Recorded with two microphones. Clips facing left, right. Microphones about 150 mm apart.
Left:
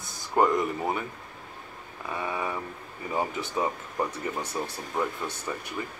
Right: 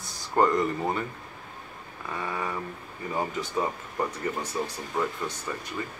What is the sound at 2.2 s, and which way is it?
Speech, 15° left (ahead or behind).